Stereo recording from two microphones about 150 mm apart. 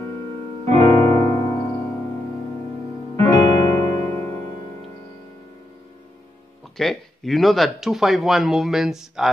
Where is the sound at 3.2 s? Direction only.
25° left (ahead or behind).